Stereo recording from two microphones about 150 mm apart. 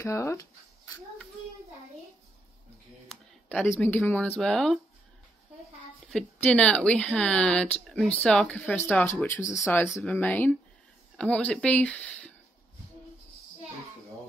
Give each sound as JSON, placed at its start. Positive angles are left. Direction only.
{"t": 0.0, "sound": "speech", "side_deg": 20}
{"t": 3.1, "sound": "speech", "side_deg": 10}
{"t": 6.0, "sound": "speech", "side_deg": 5}